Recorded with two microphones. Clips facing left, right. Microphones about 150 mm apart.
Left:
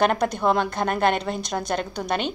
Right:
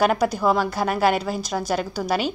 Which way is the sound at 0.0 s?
5° right (ahead or behind).